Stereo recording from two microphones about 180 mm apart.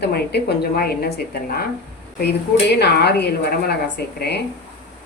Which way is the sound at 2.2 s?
65° left (ahead or behind).